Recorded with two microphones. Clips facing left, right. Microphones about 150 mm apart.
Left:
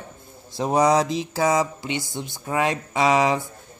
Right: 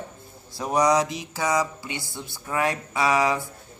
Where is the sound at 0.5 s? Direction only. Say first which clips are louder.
Left 2 dB; 25° left (ahead or behind).